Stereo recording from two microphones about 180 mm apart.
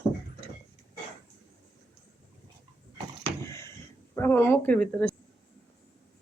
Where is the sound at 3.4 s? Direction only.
15° left (ahead or behind).